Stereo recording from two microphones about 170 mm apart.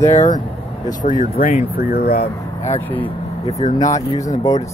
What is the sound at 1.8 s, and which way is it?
Speech, 65° left (ahead or behind).